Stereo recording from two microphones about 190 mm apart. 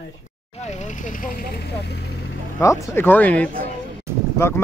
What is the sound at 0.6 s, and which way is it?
Speech, 40° left (ahead or behind).